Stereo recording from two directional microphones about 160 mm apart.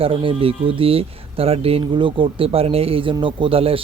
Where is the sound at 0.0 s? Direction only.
35° right (ahead or behind).